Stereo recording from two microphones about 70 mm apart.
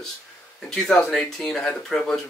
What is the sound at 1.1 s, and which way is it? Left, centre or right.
Speech, centre.